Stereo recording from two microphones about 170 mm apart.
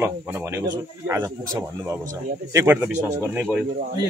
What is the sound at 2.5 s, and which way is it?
Speech, 15° right (ahead or behind).